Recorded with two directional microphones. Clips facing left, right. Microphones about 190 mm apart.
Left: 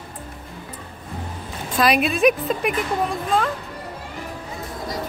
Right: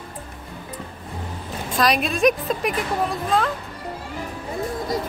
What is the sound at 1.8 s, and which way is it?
Speech, 5° left (ahead or behind).